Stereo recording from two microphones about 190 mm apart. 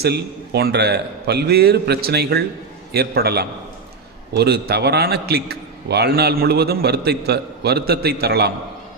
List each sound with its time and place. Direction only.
0.0 s a man's voice: 60° right (ahead or behind)